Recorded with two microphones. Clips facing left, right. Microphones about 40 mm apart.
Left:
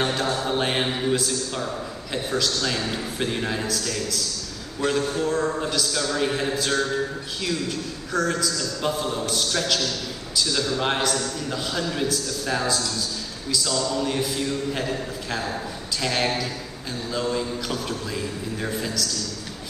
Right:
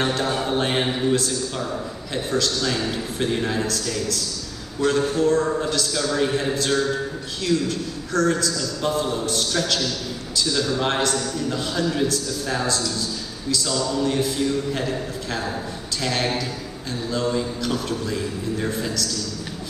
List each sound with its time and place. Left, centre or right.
0.2 s mantra: right
0.5 s a man's voice: centre